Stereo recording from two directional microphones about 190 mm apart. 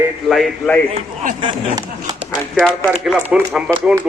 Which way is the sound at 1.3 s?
20° right (ahead or behind).